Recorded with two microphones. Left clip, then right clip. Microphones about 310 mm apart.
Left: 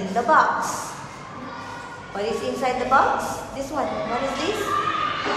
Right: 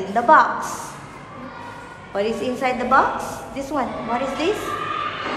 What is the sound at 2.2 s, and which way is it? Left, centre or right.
A woman's voice, right.